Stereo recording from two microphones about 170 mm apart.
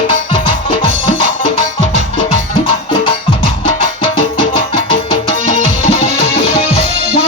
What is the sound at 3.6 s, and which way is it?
Music, 30° left (ahead or behind).